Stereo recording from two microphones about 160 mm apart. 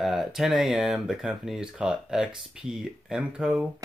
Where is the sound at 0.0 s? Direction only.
Centre (ahead or behind).